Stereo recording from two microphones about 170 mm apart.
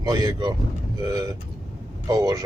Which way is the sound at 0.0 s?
20° right (ahead or behind).